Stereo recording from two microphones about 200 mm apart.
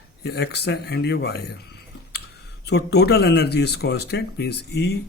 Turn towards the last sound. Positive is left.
turn(degrees=55)  # may be behind; listen again after turning